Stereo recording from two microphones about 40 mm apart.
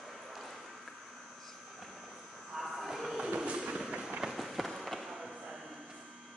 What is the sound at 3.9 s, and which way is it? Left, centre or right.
Fireworks, right.